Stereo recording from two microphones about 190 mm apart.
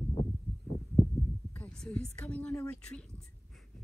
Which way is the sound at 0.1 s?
30° left (ahead or behind).